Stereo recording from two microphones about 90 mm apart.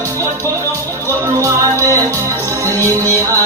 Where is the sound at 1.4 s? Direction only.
35° right (ahead or behind).